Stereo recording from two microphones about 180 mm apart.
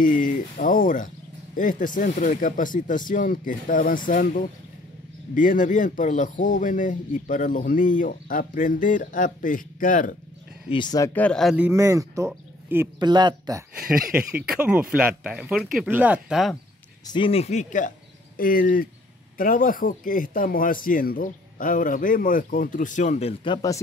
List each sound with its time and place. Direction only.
0.0 s speech: 50° left (ahead or behind)
10.7 s speech: 25° left (ahead or behind)
11.1 s a man's voice: 5° left (ahead or behind); by 12.9 s 10° right (ahead or behind)
13.0 s speech: 25° right (ahead or behind)
14.3 s speech: 5° right (ahead or behind)
17.0 s speech: 25° left (ahead or behind)